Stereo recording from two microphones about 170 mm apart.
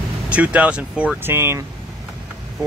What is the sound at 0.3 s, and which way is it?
Speech, 10° right (ahead or behind).